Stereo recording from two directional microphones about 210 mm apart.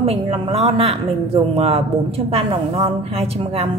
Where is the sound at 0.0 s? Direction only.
30° right (ahead or behind).